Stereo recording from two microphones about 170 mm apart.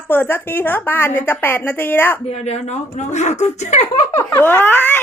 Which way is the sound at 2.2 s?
40° left (ahead or behind).